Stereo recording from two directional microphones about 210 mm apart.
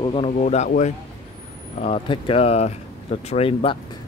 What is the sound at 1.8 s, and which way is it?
Speech, 25° left (ahead or behind).